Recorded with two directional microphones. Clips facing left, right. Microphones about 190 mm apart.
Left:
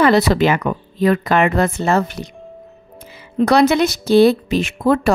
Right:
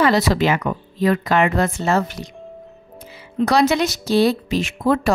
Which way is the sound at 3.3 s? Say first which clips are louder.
Left 3 dB; 60° left (ahead or behind).